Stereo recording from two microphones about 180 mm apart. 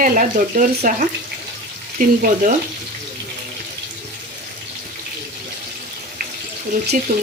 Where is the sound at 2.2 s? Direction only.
50° right (ahead or behind).